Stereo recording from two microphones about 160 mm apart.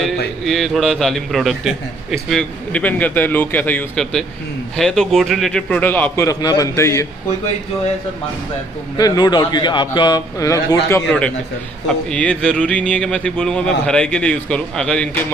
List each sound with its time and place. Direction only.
0.5 s a man's voice: centre (ahead or behind); by 7.1 s 20° left (ahead or behind)
8.9 s a man's voice: 25° left (ahead or behind)
11.0 s a man's voice: 5° left (ahead or behind)